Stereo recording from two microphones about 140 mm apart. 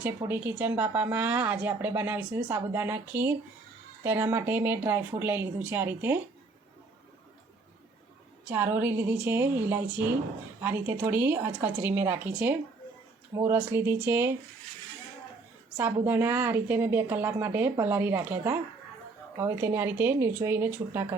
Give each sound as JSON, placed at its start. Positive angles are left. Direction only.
{"t": 0.3, "sound": "speech", "side_deg": -15}
{"t": 8.4, "sound": "speech", "side_deg": -15}
{"t": 16.0, "sound": "speech", "side_deg": -15}